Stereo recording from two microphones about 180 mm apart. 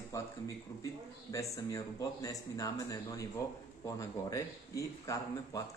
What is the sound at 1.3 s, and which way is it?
Speech, 20° left (ahead or behind).